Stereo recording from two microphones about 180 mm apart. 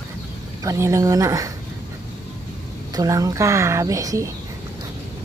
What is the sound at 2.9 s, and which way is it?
Speech, 20° right (ahead or behind).